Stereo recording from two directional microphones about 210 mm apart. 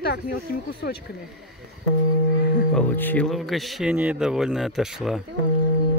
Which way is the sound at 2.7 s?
10° left (ahead or behind).